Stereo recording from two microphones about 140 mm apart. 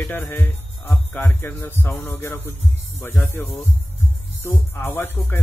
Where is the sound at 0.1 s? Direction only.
15° left (ahead or behind).